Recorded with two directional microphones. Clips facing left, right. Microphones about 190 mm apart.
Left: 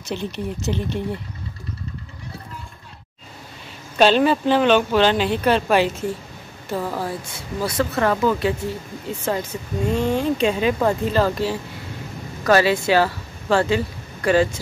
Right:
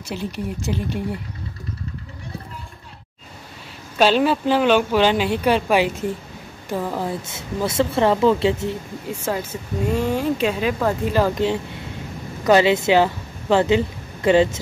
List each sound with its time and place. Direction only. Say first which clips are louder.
0.0 s speech: left 1 dB; 5° right (ahead or behind)
4.0 s a woman's voice: left 1 dB; 5° right (ahead or behind); by 8.7 s 25° right (ahead or behind)
9.1 s speech: left 1 dB; 10° right (ahead or behind)
11.1 s speech: right 1 dB; 15° right (ahead or behind)